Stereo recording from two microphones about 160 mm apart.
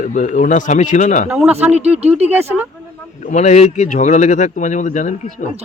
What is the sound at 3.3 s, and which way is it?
A man's voice, 45° left (ahead or behind).